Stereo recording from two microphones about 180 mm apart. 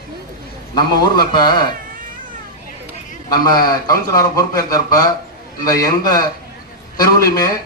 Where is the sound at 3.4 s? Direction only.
20° left (ahead or behind).